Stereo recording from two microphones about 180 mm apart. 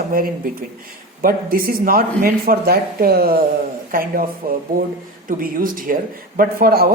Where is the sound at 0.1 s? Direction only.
50° right (ahead or behind).